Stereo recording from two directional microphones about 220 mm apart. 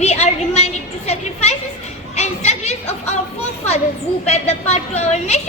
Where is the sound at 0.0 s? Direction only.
30° left (ahead or behind).